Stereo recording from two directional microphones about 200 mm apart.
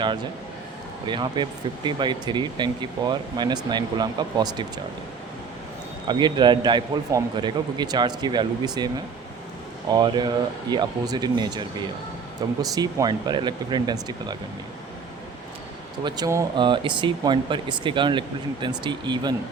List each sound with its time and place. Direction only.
1.0 s a man's voice: 20° right (ahead or behind)
6.1 s a man's voice: 20° right (ahead or behind)
9.9 s a man's voice: 20° right (ahead or behind)
16.0 s a man's voice: 20° right (ahead or behind)